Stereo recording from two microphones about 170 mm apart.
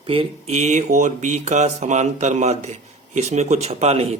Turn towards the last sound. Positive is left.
turn(degrees=-35)  # may be behind; listen again after turning